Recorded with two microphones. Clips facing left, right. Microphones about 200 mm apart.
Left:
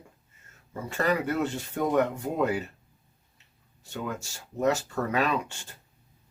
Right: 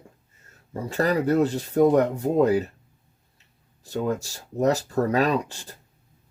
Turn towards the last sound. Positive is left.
turn(degrees=-35)  # may be behind; listen again after turning